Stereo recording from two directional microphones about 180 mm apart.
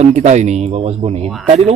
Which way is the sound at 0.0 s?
40° right (ahead or behind).